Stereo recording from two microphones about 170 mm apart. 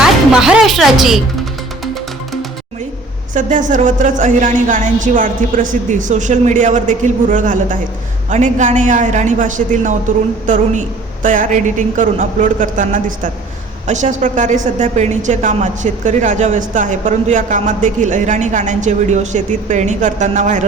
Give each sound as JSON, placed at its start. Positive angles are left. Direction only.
{"t": 0.3, "sound": "speech", "side_deg": -5}
{"t": 3.3, "sound": "a woman's voice", "side_deg": -50}